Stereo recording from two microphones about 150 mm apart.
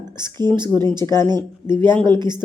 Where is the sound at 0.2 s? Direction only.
30° right (ahead or behind).